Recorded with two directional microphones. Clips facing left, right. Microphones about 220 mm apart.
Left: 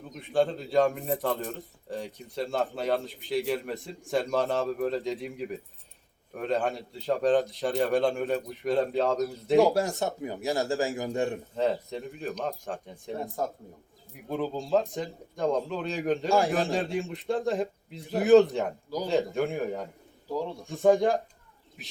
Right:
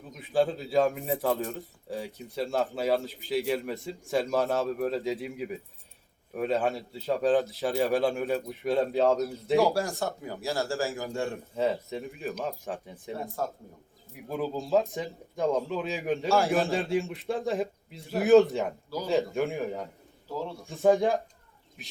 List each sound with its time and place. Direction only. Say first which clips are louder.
0.1 s a man's voice: even; centre (ahead or behind)
10.0 s speech: left 2 dB; 20° left (ahead or behind)
11.5 s a man's voice: right 2 dB; centre (ahead or behind)
14.3 s a man's voice: left 1 dB; centre (ahead or behind)
20.2 s speech: left 3 dB; 15° left (ahead or behind)
20.7 s a man's voice: left 1 dB; centre (ahead or behind)
21.8 s bird: even; centre (ahead or behind)